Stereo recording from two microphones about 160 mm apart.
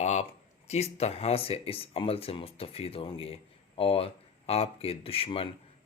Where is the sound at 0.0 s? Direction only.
45° left (ahead or behind).